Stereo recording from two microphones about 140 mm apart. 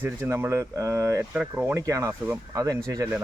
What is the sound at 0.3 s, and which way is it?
Speech, 20° right (ahead or behind).